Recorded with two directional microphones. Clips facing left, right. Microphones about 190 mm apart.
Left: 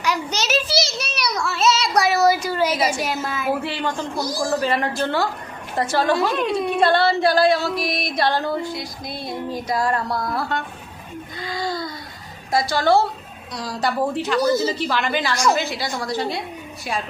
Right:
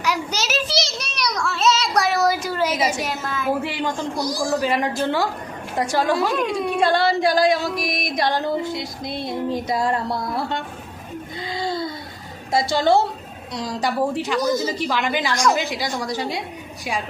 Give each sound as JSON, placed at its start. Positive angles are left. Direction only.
{"t": 0.0, "sound": "child singing", "side_deg": -5}
{"t": 2.8, "sound": "a woman's voice", "side_deg": 0}
{"t": 3.6, "sound": "singing", "side_deg": -15}
{"t": 4.2, "sound": "a woman's voice", "side_deg": 0}
{"t": 4.6, "sound": "singing", "side_deg": -10}
{"t": 11.4, "sound": "a sound", "side_deg": -25}
{"t": 12.5, "sound": "a woman's voice", "side_deg": -25}
{"t": 13.6, "sound": "singing", "side_deg": -20}
{"t": 14.3, "sound": "a woman's voice", "side_deg": 10}
{"t": 14.6, "sound": "singing", "side_deg": -10}